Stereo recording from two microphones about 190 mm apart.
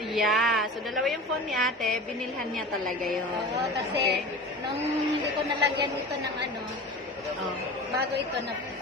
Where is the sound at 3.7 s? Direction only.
60° right (ahead or behind).